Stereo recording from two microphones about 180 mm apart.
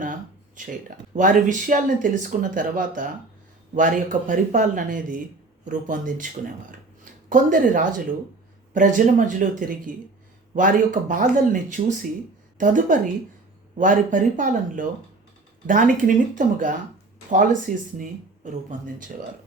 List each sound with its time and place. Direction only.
0.0 s speech: 45° right (ahead or behind)